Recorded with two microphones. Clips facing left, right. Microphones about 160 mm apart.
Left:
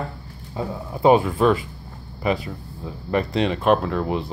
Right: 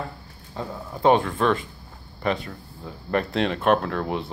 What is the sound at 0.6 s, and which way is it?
Speech, 5° left (ahead or behind).